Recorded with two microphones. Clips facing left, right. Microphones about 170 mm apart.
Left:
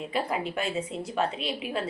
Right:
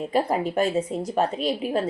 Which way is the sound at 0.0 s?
40° right (ahead or behind).